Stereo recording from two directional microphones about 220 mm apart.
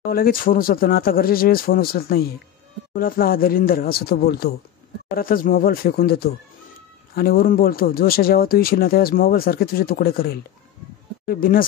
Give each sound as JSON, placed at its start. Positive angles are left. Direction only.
{"t": 0.1, "sound": "speech", "side_deg": 40}